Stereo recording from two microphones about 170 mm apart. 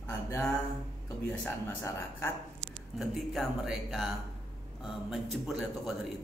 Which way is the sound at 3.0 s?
5° right (ahead or behind).